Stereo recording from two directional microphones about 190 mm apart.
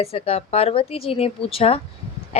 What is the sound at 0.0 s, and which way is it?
Speech, 30° left (ahead or behind).